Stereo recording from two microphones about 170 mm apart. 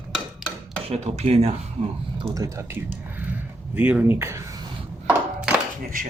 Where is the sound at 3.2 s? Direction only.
10° right (ahead or behind).